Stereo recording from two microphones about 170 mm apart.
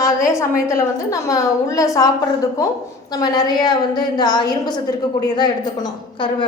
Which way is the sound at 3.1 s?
25° left (ahead or behind).